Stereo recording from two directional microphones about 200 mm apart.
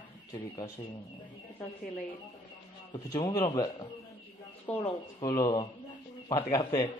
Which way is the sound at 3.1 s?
20° left (ahead or behind).